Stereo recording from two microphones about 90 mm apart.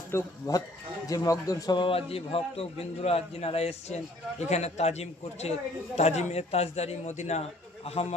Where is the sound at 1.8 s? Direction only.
90° left.